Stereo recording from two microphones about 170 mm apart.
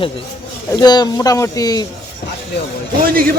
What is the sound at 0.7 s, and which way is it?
Speech, 25° left (ahead or behind).